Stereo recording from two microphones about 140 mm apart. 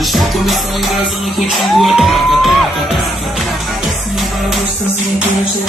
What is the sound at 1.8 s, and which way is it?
Music, centre (ahead or behind).